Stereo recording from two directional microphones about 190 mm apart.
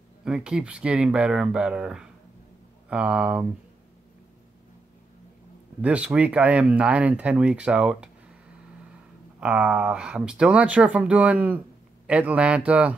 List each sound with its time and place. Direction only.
0.2 s speech: 5° right (ahead or behind)
5.8 s speech: 5° right (ahead or behind)
9.4 s speech: 5° right (ahead or behind)